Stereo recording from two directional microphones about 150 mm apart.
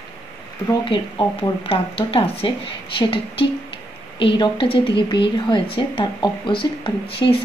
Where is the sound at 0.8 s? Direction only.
35° left (ahead or behind).